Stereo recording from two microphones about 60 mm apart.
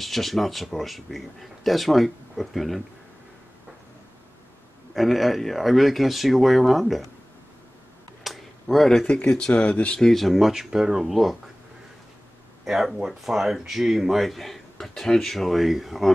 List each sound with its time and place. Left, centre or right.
0.0 s a man's voice: centre
4.9 s a man's voice: centre
8.2 s a sound: centre
9.3 s speech: centre
9.9 s a man's voice: centre
12.6 s a man's voice: centre